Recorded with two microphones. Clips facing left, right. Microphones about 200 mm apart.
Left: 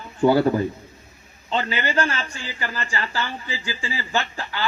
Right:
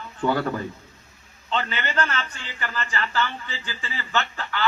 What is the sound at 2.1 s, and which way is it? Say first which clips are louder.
Speech: even; 10° left (ahead or behind).